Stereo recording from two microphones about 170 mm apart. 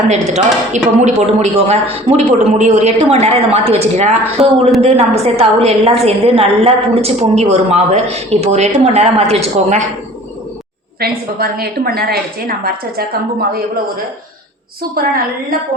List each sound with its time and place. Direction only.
0.1 s a woman's voice: 40° right (ahead or behind)
11.0 s a woman's voice: 65° right (ahead or behind)
14.8 s a woman's voice: 60° right (ahead or behind)